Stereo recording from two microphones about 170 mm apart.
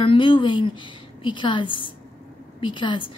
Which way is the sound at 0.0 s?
30° left (ahead or behind).